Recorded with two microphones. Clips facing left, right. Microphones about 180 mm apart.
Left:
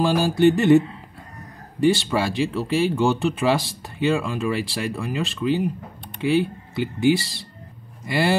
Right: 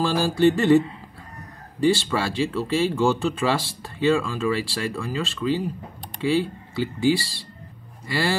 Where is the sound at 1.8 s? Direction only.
20° left (ahead or behind).